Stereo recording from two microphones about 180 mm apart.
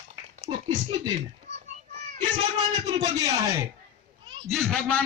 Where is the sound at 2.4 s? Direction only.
25° right (ahead or behind).